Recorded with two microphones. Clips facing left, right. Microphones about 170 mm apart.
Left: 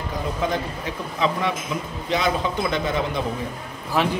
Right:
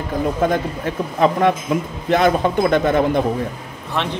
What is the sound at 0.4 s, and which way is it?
Speech, 50° right (ahead or behind).